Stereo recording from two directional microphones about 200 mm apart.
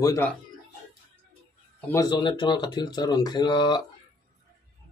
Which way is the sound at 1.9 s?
20° left (ahead or behind).